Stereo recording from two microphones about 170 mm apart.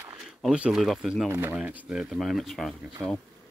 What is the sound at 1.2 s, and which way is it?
Speech, 15° right (ahead or behind).